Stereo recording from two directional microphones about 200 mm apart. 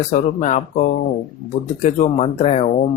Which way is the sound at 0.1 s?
40° left (ahead or behind).